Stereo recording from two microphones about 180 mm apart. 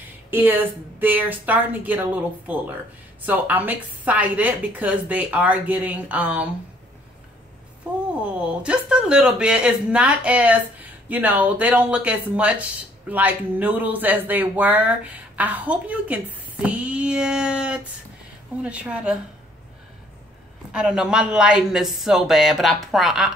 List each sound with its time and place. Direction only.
0.3 s speech: 10° right (ahead or behind)
7.8 s speech: 5° right (ahead or behind)
20.7 s speech: 5° right (ahead or behind)